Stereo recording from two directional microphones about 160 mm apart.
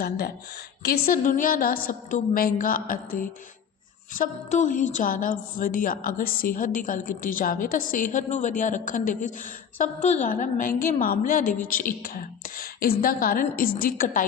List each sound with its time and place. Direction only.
0.0 s speech: 75° left (ahead or behind)